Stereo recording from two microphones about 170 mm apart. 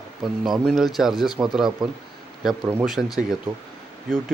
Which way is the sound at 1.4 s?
5° right (ahead or behind).